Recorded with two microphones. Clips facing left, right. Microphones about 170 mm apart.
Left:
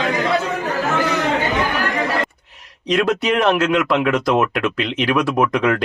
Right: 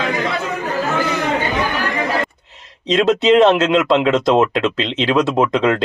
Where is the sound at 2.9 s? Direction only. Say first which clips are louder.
Right 5 dB; 25° right (ahead or behind).